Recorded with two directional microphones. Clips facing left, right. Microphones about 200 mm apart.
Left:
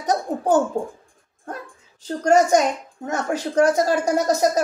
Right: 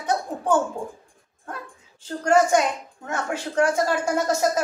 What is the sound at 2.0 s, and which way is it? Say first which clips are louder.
A woman's voice: left 2 dB; 40° left (ahead or behind).